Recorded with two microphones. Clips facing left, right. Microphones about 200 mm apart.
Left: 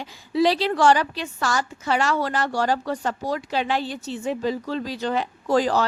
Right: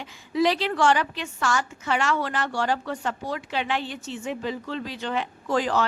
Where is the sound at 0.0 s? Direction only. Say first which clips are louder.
Left 2 dB; 35° left (ahead or behind).